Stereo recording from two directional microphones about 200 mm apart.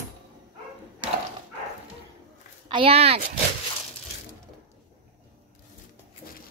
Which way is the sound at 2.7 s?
30° right (ahead or behind).